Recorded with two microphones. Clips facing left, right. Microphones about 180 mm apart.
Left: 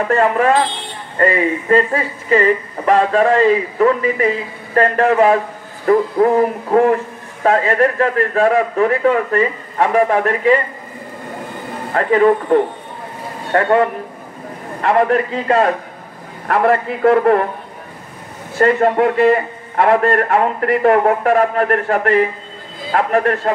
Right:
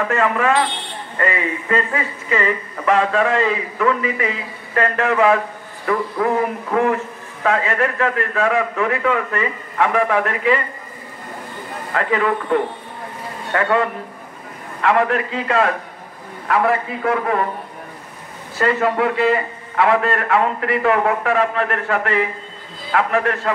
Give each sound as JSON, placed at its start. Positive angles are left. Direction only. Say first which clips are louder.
{"t": 0.1, "sound": "speech", "louder": "left 6 dB", "side_deg": 35}
{"t": 11.9, "sound": "a man's voice", "louder": "left 7 dB", "side_deg": 35}
{"t": 16.4, "sound": "a man's voice", "louder": "left 3 dB", "side_deg": 55}
{"t": 18.6, "sound": "a man's voice", "louder": "left 5 dB", "side_deg": 45}